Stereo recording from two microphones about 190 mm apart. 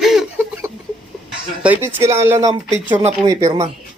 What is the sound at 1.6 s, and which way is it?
Speech, 10° right (ahead or behind).